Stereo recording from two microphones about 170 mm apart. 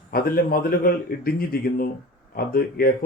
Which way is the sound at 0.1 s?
60° left (ahead or behind).